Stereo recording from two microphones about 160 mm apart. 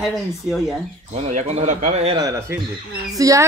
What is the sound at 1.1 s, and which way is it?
A man's voice, 45° right (ahead or behind).